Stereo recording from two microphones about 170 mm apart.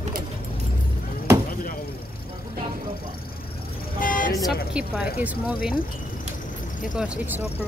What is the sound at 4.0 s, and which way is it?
Vehicle, 50° left (ahead or behind).